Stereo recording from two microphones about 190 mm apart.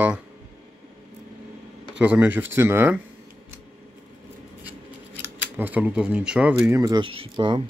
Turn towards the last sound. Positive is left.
turn(degrees=-25)  # may be behind; listen again after turning